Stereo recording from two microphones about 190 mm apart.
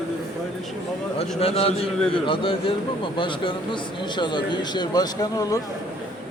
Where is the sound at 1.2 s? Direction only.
30° left (ahead or behind).